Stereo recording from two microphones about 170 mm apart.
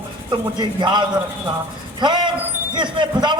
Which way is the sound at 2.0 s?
25° right (ahead or behind).